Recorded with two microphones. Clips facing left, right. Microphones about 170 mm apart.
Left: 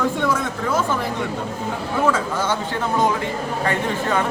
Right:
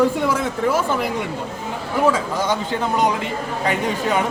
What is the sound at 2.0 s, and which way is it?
Speech, 15° right (ahead or behind).